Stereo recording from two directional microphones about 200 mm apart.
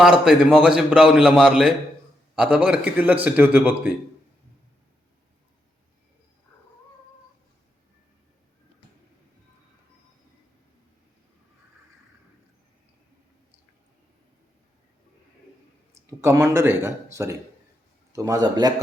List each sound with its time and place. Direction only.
0.0 s a man's voice: 5° right (ahead or behind)
16.0 s a man's voice: 15° right (ahead or behind)